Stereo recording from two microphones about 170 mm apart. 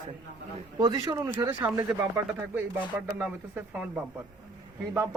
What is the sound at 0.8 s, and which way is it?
A man's voice, 20° right (ahead or behind).